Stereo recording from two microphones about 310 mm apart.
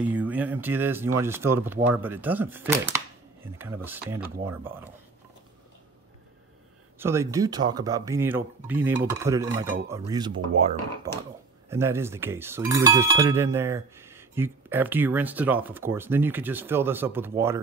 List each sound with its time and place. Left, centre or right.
0.0 s speech: centre
7.0 s speech: centre